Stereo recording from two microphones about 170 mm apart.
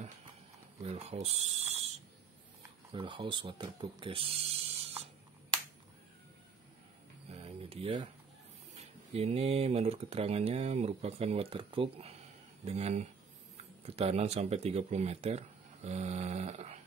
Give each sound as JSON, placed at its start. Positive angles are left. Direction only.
{"t": 0.8, "sound": "speech", "side_deg": -40}
{"t": 2.9, "sound": "speech", "side_deg": -30}
{"t": 7.2, "sound": "a sound", "side_deg": -35}
{"t": 8.7, "sound": "speech", "side_deg": -35}